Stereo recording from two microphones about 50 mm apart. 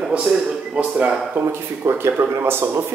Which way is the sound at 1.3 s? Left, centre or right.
Right.